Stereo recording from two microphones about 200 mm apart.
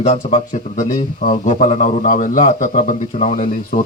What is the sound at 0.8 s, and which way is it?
A man's voice, 40° left (ahead or behind).